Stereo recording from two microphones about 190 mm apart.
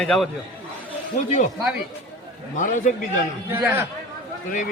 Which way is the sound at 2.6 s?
40° left (ahead or behind).